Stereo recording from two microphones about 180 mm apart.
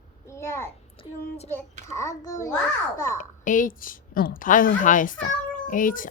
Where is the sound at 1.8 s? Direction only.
15° left (ahead or behind).